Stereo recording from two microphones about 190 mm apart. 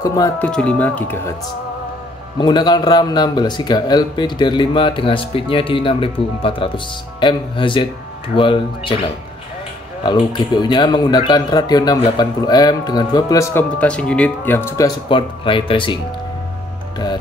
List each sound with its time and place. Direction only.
0.0 s speech: 20° left (ahead or behind)
0.4 s speech: 5° left (ahead or behind)
2.3 s speech: 25° left (ahead or behind)
10.0 s speech: 20° left (ahead or behind)